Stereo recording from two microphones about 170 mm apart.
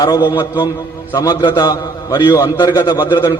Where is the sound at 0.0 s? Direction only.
25° left (ahead or behind).